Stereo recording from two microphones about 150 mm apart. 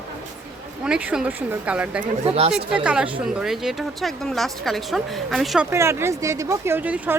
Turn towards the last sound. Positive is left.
turn(degrees=-10)  # may be behind; listen again after turning